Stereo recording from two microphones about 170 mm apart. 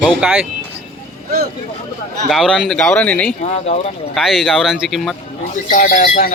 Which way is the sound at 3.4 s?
40° left (ahead or behind).